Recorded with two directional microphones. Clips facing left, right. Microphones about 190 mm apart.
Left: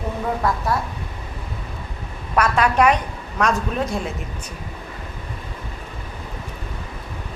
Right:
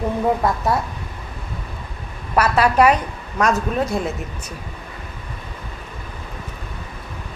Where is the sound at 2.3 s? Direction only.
5° right (ahead or behind).